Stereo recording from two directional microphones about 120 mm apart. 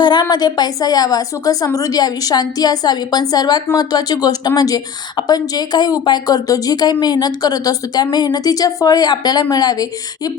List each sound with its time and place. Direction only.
0.0 s a woman's voice: 35° left (ahead or behind)